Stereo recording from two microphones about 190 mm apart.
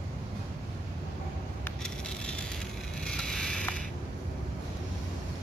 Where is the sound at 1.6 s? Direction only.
5° left (ahead or behind).